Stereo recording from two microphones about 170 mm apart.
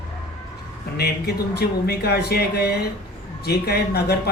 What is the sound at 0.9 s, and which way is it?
Speech, 70° left (ahead or behind).